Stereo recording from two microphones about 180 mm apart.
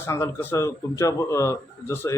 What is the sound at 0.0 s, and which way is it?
Speech, 15° left (ahead or behind).